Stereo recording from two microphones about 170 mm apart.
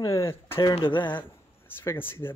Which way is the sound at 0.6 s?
30° left (ahead or behind).